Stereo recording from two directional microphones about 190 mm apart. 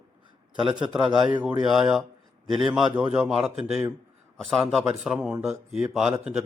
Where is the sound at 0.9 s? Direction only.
5° right (ahead or behind).